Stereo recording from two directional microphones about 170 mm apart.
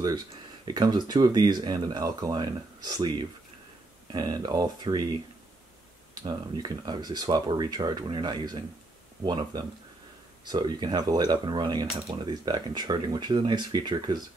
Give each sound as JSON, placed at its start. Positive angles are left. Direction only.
{"t": 0.7, "sound": "speech", "side_deg": -25}
{"t": 6.2, "sound": "speech", "side_deg": -25}